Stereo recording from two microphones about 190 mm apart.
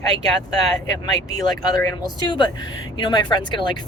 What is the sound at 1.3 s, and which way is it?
Speech, 20° left (ahead or behind).